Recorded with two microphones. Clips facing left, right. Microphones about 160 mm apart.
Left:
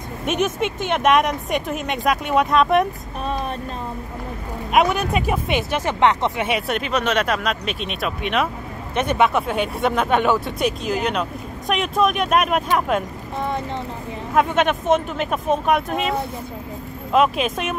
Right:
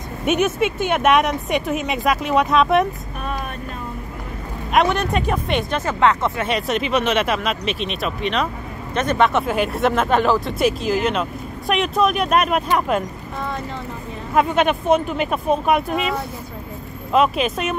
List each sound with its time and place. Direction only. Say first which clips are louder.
0.2 s speech: right 3 dB; 5° right (ahead or behind)
4.7 s speech: even; 5° left (ahead or behind)
5.9 s speech: even; 20° left (ahead or behind)
6.4 s speech: right 1 dB; 10° left (ahead or behind)
6.8 s speech: right 2 dB; 5° right (ahead or behind)
14.3 s speech: right 1 dB; centre (ahead or behind)